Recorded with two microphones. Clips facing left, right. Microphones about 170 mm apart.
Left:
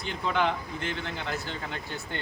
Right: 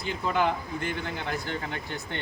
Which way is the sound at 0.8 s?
50° right (ahead or behind).